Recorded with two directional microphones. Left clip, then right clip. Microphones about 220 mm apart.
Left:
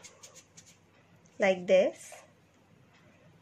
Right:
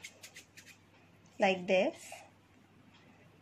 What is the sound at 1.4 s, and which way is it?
Speech, 25° left (ahead or behind).